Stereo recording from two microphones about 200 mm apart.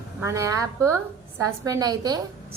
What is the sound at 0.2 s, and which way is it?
A woman's voice, 15° right (ahead or behind).